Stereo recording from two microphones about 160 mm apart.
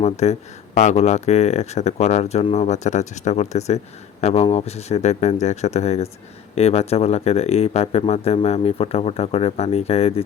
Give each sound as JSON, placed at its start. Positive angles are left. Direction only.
{"t": 0.0, "sound": "speech", "side_deg": 45}